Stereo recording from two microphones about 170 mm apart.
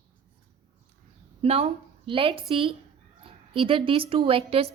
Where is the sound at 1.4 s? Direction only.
35° right (ahead or behind).